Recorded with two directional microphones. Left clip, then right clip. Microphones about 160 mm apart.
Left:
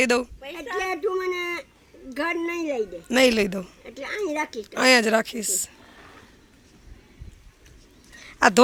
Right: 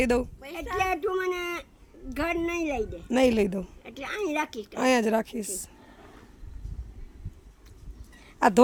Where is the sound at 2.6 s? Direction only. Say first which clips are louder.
Left 3 dB; 5° right (ahead or behind).